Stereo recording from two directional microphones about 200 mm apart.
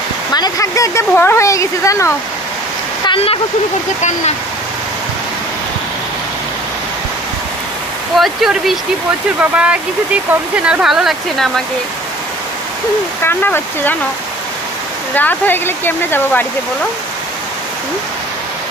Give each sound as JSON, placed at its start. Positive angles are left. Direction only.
{"t": 0.3, "sound": "speech", "side_deg": 20}
{"t": 3.1, "sound": "speech", "side_deg": 30}
{"t": 8.2, "sound": "speech", "side_deg": 0}
{"t": 13.2, "sound": "speech", "side_deg": 10}
{"t": 15.1, "sound": "speech", "side_deg": 10}